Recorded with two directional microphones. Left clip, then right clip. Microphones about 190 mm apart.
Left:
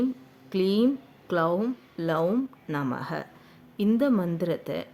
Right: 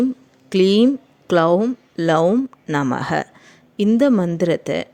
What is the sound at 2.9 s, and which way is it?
A woman's voice, 40° right (ahead or behind).